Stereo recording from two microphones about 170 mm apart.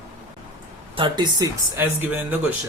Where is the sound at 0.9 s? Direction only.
25° right (ahead or behind).